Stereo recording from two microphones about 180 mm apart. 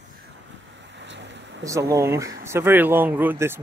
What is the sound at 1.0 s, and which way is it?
Vehicle, 90° right.